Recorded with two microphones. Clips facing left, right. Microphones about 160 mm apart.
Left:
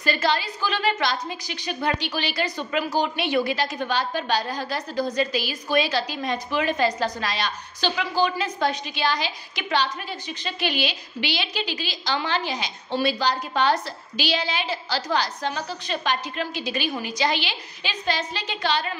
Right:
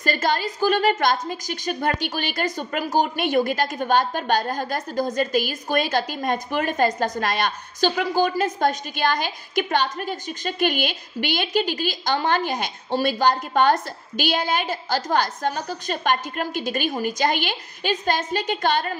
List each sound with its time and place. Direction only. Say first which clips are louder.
0.0 s a woman's voice: right 1 dB; 45° right (ahead or behind)